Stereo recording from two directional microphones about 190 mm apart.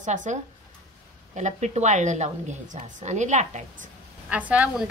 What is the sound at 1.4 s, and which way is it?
Speech, 35° right (ahead or behind).